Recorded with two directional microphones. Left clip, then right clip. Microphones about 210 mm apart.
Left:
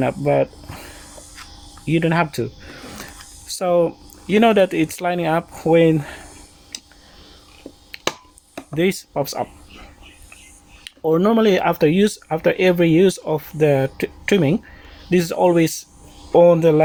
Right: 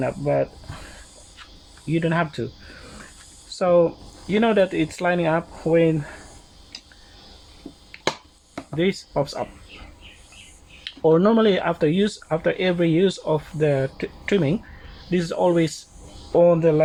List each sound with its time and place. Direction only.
0.0 s speech: 50° left (ahead or behind)
1.9 s speech: 45° left (ahead or behind)
3.6 s speech: 45° left (ahead or behind)
7.9 s finger snapping: 50° left (ahead or behind)
8.7 s speech: 45° left (ahead or behind)
10.8 s speech: 40° left (ahead or behind)